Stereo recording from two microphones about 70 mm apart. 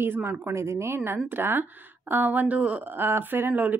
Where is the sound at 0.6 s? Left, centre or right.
Right.